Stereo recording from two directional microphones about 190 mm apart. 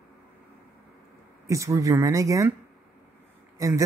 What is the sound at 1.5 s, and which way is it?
Speech, 15° right (ahead or behind).